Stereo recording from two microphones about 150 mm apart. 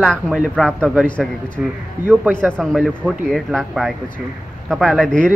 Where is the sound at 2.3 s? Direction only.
5° left (ahead or behind).